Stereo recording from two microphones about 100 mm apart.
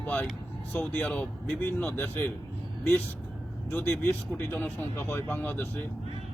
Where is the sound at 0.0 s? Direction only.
15° left (ahead or behind).